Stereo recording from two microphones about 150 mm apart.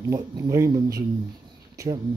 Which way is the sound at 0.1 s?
20° right (ahead or behind).